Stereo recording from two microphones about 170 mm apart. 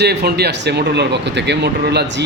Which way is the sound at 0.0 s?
75° right (ahead or behind).